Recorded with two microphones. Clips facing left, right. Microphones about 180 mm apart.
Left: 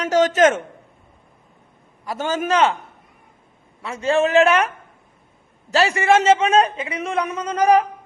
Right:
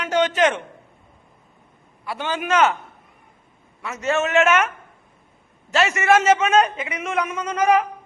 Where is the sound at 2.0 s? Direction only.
40° left (ahead or behind).